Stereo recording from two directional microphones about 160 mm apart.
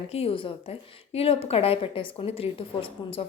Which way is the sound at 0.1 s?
35° left (ahead or behind).